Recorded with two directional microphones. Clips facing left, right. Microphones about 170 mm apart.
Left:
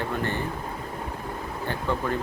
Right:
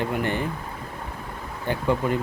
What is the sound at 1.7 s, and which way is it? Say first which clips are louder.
Speech: right 5 dB; 15° right (ahead or behind).